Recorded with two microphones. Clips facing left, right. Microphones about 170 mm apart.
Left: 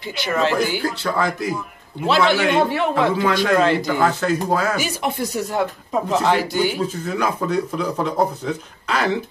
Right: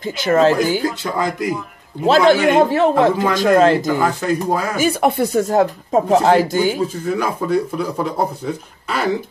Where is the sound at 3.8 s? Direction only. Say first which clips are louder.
Right 1 dB; 10° right (ahead or behind).